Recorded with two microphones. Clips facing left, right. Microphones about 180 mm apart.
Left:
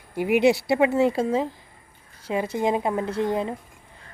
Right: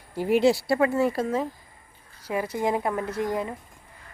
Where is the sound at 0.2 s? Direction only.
15° left (ahead or behind).